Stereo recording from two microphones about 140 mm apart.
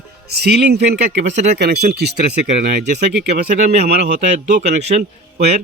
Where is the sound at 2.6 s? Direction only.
90° right; by 3.0 s 75° right (ahead or behind).